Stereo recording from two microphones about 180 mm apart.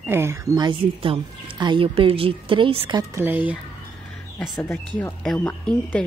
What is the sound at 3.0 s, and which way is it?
Speech, 15° right (ahead or behind).